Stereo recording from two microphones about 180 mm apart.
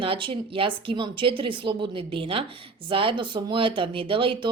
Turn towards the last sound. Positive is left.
turn(degrees=-30)  # may be behind; listen again after turning